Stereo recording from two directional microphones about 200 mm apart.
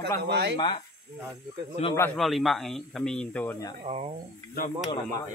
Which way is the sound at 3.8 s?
30° right (ahead or behind).